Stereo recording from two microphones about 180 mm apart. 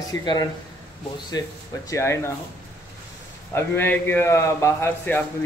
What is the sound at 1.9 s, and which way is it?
Speech, 15° left (ahead or behind).